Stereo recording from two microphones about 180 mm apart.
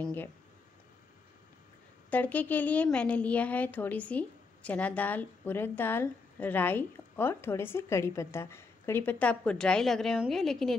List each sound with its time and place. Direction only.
0.0 s a woman's voice: 10° left (ahead or behind)
2.0 s a woman's voice: 10° left (ahead or behind)